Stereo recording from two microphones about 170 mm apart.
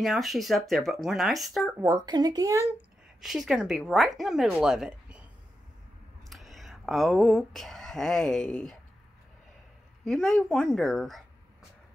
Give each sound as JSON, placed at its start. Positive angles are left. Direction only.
{"t": 0.0, "sound": "speech", "side_deg": 0}
{"t": 1.8, "sound": "speech", "side_deg": -20}
{"t": 3.2, "sound": "speech", "side_deg": 0}
{"t": 6.2, "sound": "speech", "side_deg": 0}
{"t": 10.0, "sound": "speech", "side_deg": 0}